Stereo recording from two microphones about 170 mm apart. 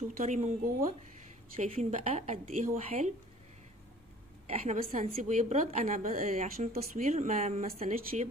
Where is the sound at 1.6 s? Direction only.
45° right (ahead or behind).